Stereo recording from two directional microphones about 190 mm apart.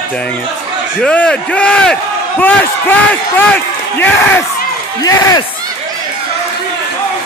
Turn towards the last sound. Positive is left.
turn(degrees=20)  # may be behind; listen again after turning